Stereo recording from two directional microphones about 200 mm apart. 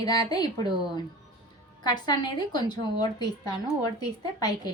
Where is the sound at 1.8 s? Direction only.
20° left (ahead or behind).